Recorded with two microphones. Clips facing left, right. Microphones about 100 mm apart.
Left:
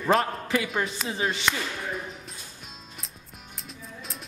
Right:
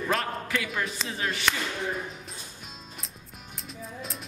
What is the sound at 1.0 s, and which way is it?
Speech, 25° left (ahead or behind).